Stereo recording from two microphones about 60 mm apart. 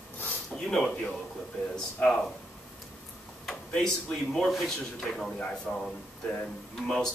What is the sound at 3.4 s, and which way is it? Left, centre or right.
A man's voice, centre.